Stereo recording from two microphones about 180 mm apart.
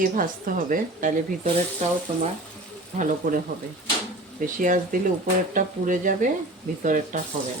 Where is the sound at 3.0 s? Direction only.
45° right (ahead or behind).